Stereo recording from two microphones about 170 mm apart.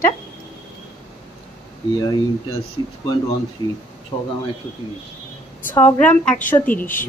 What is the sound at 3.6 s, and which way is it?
Speech, 25° left (ahead or behind).